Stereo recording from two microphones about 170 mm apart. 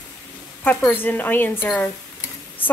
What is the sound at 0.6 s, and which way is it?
Speech, 10° left (ahead or behind).